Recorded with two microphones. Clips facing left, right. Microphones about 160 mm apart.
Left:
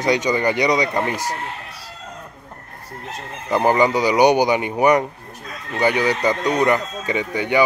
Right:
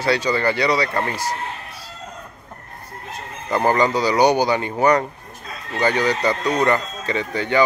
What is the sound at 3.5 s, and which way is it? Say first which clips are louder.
Speech: left 2 dB; 10° left (ahead or behind).